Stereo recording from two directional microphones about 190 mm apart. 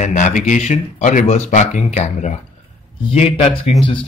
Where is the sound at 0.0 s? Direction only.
40° left (ahead or behind).